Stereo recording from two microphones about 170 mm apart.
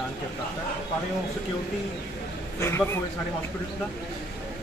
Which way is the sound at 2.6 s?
15° left (ahead or behind).